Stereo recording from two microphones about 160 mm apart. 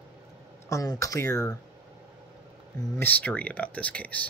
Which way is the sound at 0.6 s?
20° left (ahead or behind).